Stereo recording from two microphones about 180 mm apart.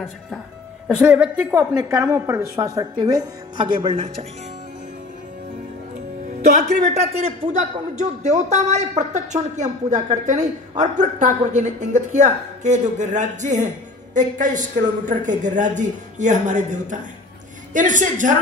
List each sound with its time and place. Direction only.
0.8 s speech: 5° right (ahead or behind)
3.8 s a man's voice: 30° right (ahead or behind)
6.9 s a man's voice: 35° right (ahead or behind)